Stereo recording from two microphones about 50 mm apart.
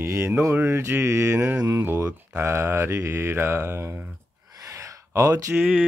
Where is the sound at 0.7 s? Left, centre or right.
Right.